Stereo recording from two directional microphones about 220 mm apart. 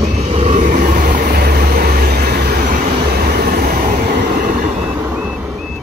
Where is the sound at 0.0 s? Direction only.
30° right (ahead or behind); by 3.8 s 45° right (ahead or behind).